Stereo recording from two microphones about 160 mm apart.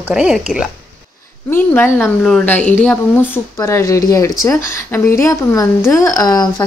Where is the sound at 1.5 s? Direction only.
15° left (ahead or behind).